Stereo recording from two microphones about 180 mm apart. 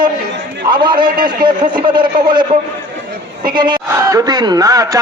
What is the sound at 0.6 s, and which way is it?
Speech, 25° right (ahead or behind).